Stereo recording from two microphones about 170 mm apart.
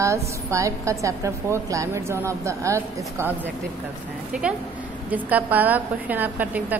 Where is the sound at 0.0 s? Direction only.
15° right (ahead or behind).